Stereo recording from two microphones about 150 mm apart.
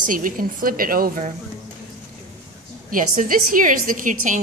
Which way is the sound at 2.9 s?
65° right (ahead or behind).